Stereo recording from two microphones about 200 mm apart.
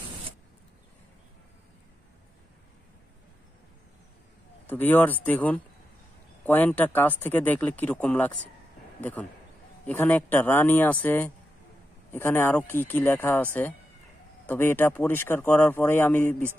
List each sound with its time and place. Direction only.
4.6 s speech: 10° left (ahead or behind)